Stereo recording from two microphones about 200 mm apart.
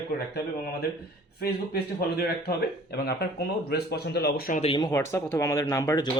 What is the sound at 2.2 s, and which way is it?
Speech, 50° left (ahead or behind).